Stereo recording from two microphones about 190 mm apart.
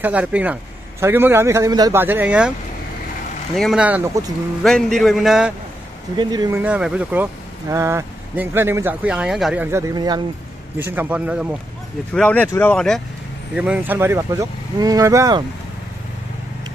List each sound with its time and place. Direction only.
0.0 s speech: 5° right (ahead or behind)
3.5 s speech: centre (ahead or behind)
4.6 s speech: 5° left (ahead or behind)
6.1 s speech: 20° right (ahead or behind)
6.6 s speech: 5° right (ahead or behind); by 10.2 s 20° right (ahead or behind)
10.8 s speech: 10° right (ahead or behind)
12.1 s speech: 5° left (ahead or behind)
13.6 s speech: 10° right (ahead or behind)